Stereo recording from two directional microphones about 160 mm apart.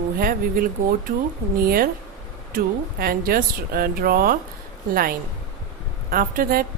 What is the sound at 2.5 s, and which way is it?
Speech, 65° right (ahead or behind).